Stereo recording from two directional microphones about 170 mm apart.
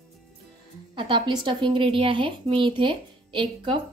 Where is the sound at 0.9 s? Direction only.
30° right (ahead or behind).